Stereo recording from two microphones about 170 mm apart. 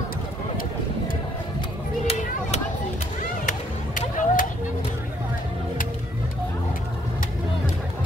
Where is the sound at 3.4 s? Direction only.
50° left (ahead or behind).